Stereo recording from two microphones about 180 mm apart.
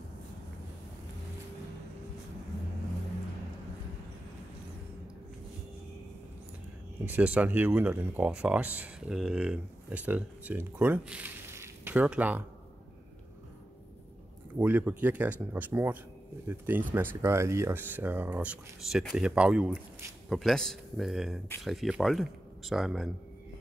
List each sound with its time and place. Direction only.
7.1 s speech: 10° right (ahead or behind)
14.6 s speech: 10° right (ahead or behind)